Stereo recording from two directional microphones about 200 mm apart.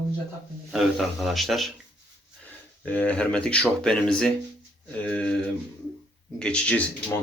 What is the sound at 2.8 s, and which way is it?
Speech, 5° left (ahead or behind).